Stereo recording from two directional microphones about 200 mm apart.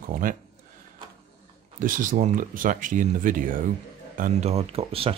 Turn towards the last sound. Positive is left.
turn(degrees=-30)  # may be behind; listen again after turning